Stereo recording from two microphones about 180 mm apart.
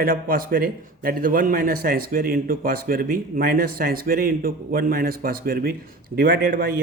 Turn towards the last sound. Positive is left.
turn(degrees=-55)  # may be behind; listen again after turning